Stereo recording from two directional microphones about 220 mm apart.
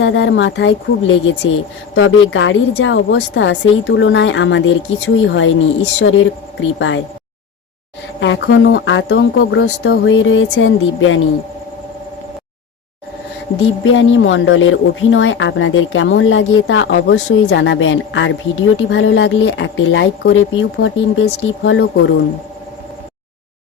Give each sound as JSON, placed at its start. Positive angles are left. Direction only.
{"t": 0.0, "sound": "speech", "side_deg": 60}
{"t": 8.2, "sound": "speech", "side_deg": 55}
{"t": 13.8, "sound": "speech", "side_deg": 60}